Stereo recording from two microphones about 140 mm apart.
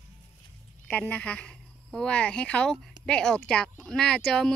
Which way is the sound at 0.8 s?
10° left (ahead or behind).